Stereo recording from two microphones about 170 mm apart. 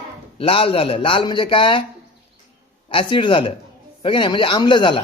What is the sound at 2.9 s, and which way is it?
Speech, 30° left (ahead or behind).